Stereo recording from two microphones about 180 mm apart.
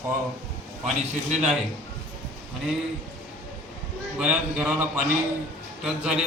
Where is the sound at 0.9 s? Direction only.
40° right (ahead or behind).